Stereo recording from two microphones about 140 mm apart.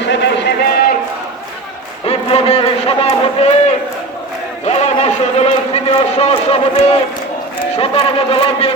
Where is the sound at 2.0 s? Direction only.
45° left (ahead or behind).